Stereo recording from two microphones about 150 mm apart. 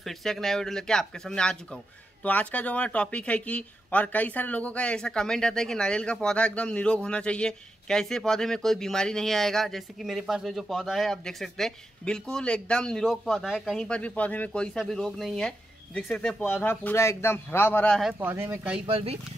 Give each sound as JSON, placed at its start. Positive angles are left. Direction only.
{"t": 0.0, "sound": "speech", "side_deg": 0}
{"t": 18.2, "sound": "speech", "side_deg": -15}
{"t": 18.9, "sound": "speech", "side_deg": -40}